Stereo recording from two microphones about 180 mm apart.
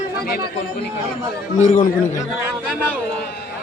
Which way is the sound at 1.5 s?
45° left (ahead or behind).